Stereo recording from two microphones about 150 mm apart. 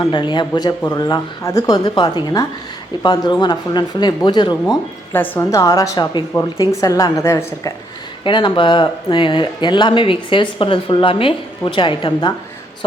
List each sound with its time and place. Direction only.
0.0 s speech: 30° left (ahead or behind)
5.1 s speech: 15° left (ahead or behind)
8.2 s speech: 30° left (ahead or behind)